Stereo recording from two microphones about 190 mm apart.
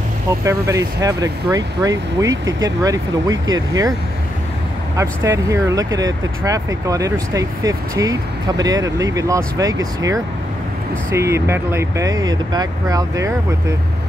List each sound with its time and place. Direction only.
0.5 s speech: 15° right (ahead or behind)
4.9 s speech: 15° right (ahead or behind)